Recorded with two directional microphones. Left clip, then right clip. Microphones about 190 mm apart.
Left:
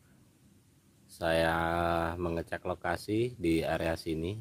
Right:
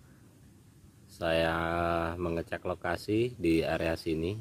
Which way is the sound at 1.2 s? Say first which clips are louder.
Even; 25° left (ahead or behind).